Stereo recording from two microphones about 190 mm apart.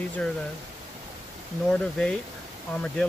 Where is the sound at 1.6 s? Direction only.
5° left (ahead or behind).